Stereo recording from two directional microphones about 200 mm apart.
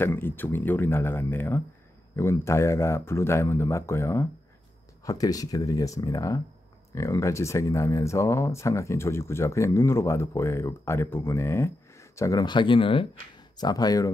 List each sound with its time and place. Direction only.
0.0 s speech: 10° left (ahead or behind)